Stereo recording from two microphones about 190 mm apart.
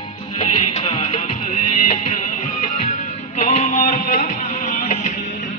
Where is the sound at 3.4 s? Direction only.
35° left (ahead or behind).